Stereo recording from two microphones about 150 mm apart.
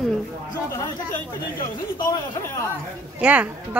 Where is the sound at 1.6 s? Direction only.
20° left (ahead or behind).